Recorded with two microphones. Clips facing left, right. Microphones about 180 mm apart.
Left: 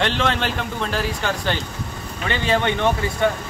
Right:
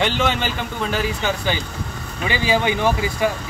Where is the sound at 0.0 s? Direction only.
5° right (ahead or behind).